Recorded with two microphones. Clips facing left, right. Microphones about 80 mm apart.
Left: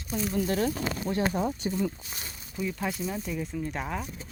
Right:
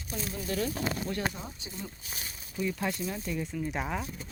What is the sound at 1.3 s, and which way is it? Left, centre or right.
Speech, left.